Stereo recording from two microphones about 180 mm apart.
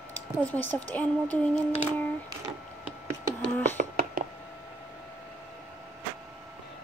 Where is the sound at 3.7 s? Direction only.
50° right (ahead or behind).